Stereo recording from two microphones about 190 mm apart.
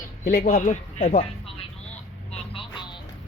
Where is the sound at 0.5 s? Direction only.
40° left (ahead or behind).